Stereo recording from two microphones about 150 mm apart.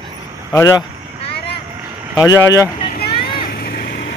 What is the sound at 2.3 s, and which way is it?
Speech, 20° left (ahead or behind).